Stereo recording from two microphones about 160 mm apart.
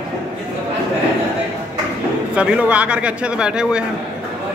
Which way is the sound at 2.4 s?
5° right (ahead or behind).